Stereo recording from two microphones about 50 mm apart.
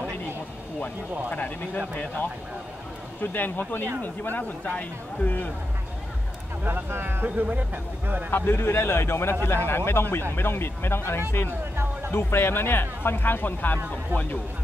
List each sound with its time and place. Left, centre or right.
1.3 s speech: left
3.2 s speech: left
6.6 s speech: right
7.4 s speech: right
8.3 s a man's voice: left
11.7 s music: right
12.1 s a man's voice: left